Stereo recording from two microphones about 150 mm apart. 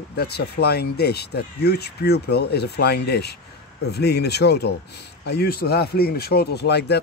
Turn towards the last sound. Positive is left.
turn(degrees=90)